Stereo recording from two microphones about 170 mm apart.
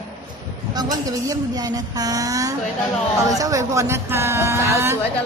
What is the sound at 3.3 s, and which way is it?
Speech, 20° right (ahead or behind).